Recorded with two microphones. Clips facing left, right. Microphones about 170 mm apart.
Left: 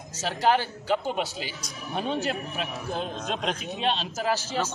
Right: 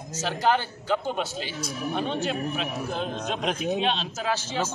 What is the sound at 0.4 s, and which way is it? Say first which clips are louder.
A man's voice: left 1 dB; 5° left (ahead or behind).